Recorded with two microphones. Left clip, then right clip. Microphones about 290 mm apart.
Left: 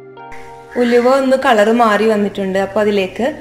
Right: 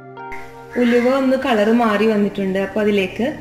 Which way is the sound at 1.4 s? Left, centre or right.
Left.